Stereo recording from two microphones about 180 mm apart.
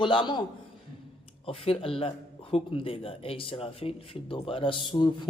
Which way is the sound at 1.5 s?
30° left (ahead or behind).